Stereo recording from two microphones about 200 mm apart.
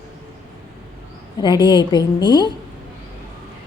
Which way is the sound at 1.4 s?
20° left (ahead or behind).